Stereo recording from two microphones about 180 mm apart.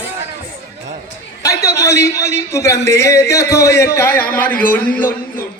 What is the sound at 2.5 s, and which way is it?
Speech, 15° left (ahead or behind).